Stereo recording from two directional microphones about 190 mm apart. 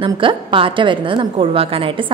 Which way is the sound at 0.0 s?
25° right (ahead or behind).